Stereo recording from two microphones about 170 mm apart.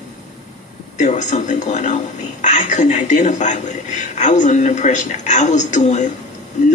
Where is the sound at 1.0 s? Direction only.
45° left (ahead or behind).